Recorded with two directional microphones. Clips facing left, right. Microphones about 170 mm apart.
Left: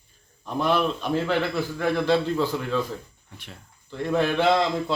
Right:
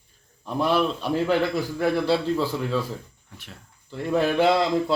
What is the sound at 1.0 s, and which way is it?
Speech, 40° right (ahead or behind).